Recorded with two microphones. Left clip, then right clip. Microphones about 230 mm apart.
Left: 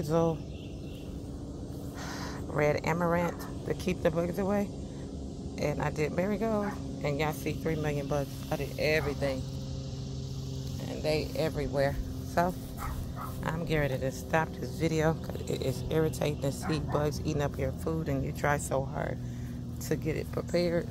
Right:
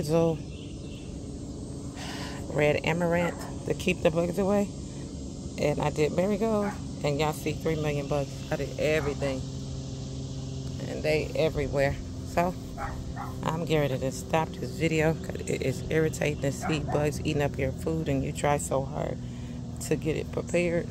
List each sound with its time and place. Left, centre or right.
0.0 s a woman's voice: centre
2.9 s a woman's voice: right
10.9 s a woman's voice: centre